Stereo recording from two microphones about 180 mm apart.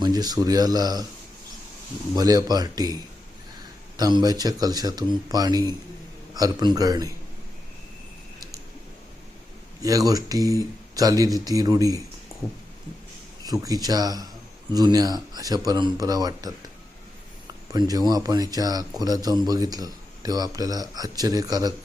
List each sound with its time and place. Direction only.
0.0 s speech: 20° right (ahead or behind)
2.1 s speech: 20° right (ahead or behind)
9.8 s speech: 20° right (ahead or behind)
13.4 s speech: 20° right (ahead or behind)
17.7 s speech: 20° right (ahead or behind)